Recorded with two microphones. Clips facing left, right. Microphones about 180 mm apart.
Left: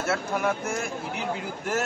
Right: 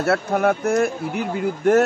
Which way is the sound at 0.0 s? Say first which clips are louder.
Right 7 dB; 60° right (ahead or behind).